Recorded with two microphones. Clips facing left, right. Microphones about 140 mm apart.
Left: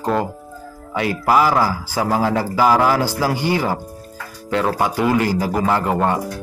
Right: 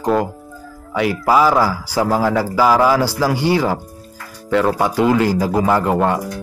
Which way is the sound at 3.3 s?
20° right (ahead or behind).